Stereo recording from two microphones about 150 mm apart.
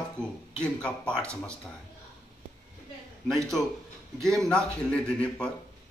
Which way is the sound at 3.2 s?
Centre (ahead or behind).